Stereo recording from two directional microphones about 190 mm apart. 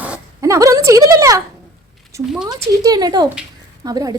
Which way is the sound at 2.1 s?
15° right (ahead or behind).